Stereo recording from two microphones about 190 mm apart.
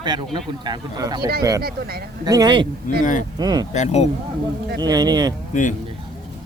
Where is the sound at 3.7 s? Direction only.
35° left (ahead or behind).